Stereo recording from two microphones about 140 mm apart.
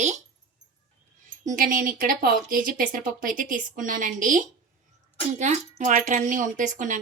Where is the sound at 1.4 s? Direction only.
75° right (ahead or behind).